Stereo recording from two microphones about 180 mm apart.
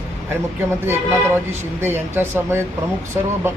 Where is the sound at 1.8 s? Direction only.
10° right (ahead or behind).